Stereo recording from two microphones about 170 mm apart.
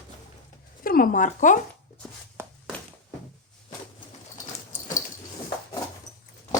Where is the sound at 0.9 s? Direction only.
55° left (ahead or behind).